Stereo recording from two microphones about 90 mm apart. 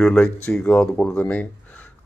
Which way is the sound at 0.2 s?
10° left (ahead or behind).